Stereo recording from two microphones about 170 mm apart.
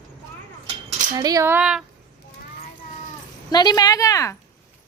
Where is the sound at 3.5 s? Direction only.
25° left (ahead or behind).